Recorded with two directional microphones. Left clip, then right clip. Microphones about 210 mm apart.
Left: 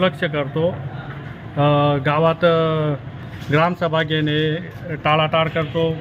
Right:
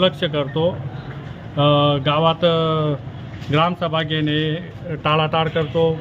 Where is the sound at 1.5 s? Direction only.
10° left (ahead or behind).